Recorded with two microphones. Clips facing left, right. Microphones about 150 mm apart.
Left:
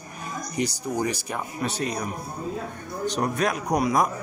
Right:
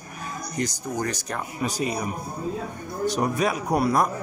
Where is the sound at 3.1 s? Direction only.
10° right (ahead or behind).